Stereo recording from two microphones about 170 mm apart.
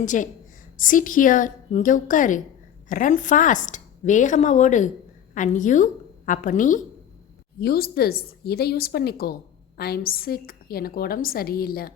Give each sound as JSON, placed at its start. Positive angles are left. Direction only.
{"t": 0.0, "sound": "a woman's voice", "side_deg": 45}
{"t": 7.6, "sound": "a woman's voice", "side_deg": 65}